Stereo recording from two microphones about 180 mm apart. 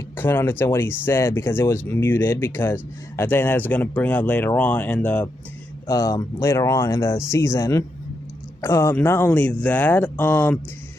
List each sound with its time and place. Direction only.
0.2 s speech: 10° left (ahead or behind)
5.9 s speech: 20° left (ahead or behind)